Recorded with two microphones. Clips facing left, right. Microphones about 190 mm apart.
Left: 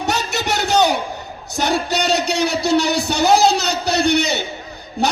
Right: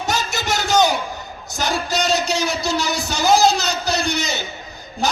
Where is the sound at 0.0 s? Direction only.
65° left (ahead or behind).